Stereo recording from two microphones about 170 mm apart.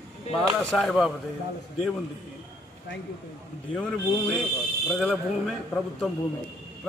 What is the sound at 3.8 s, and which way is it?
A man's voice, 5° left (ahead or behind).